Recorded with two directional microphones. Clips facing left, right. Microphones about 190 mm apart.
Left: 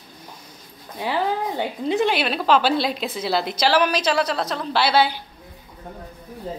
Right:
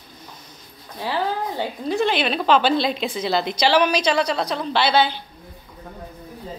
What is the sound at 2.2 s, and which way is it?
A woman's voice, 5° left (ahead or behind).